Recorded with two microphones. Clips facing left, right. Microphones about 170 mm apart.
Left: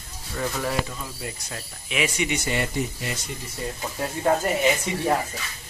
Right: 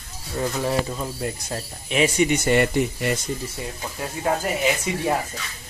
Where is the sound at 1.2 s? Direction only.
40° right (ahead or behind).